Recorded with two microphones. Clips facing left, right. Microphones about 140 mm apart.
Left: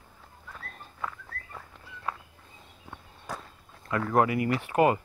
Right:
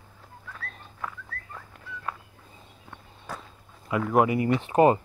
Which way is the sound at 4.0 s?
10° right (ahead or behind).